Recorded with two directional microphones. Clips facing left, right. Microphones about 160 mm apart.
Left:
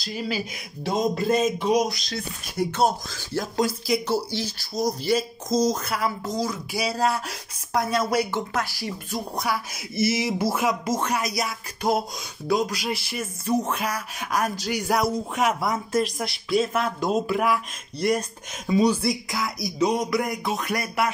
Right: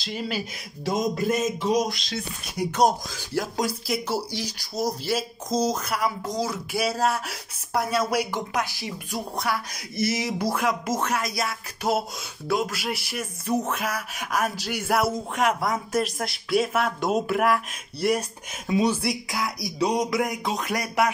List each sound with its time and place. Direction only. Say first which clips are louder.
0.0 s speech: left 1 dB; 5° left (ahead or behind)
0.8 s a sound: left 1 dB; 25° left (ahead or behind)
2.0 s speech: even; 10° right (ahead or behind)
9.4 s speech: even; 5° left (ahead or behind)
18.7 s speech: left 2 dB; 5° right (ahead or behind)